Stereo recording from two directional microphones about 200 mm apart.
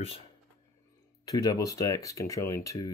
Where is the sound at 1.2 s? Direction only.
20° left (ahead or behind).